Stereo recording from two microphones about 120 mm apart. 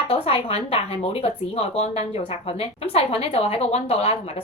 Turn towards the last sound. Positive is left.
turn(degrees=55)  # may be behind; listen again after turning